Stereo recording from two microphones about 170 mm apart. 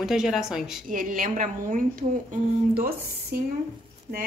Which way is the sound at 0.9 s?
55° right (ahead or behind).